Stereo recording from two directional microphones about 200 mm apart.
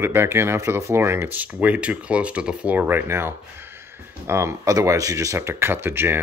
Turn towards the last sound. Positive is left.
turn(degrees=-10)  # may be behind; listen again after turning